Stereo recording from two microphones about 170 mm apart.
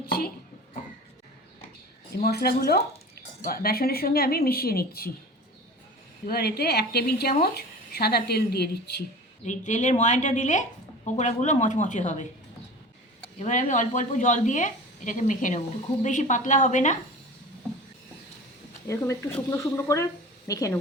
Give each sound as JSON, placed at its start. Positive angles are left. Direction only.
{"t": 2.2, "sound": "speech", "side_deg": 65}
{"t": 6.2, "sound": "a woman's voice", "side_deg": 70}
{"t": 9.4, "sound": "a woman's voice", "side_deg": 45}
{"t": 13.4, "sound": "a woman's voice", "side_deg": 45}
{"t": 18.9, "sound": "speech", "side_deg": 15}